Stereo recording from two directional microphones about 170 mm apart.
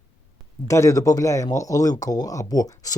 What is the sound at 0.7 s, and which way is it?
Speech, 20° left (ahead or behind).